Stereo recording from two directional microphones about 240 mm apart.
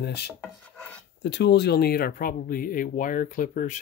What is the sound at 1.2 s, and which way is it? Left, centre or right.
Speech, left.